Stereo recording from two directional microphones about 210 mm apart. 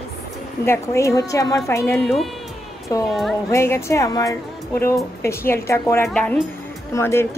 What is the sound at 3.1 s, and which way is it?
Speech, centre (ahead or behind).